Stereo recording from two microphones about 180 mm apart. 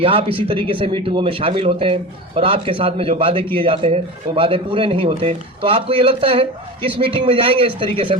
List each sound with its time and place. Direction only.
0.0 s speech: 30° right (ahead or behind)